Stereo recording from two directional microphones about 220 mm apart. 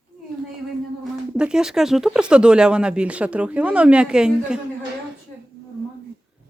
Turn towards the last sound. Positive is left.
turn(degrees=-5)  # may be behind; listen again after turning